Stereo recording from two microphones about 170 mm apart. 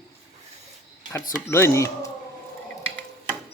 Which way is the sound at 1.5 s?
15° left (ahead or behind).